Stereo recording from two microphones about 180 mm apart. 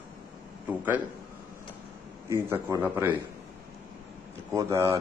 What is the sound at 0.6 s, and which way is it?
Speech, 10° right (ahead or behind).